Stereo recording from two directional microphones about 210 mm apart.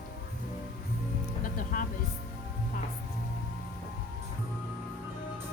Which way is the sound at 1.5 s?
40° left (ahead or behind).